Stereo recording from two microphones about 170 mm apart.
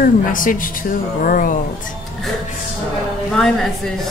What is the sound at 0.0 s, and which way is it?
A woman's voice, 55° left (ahead or behind).